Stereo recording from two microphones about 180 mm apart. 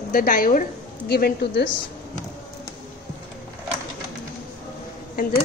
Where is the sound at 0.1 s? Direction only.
50° left (ahead or behind).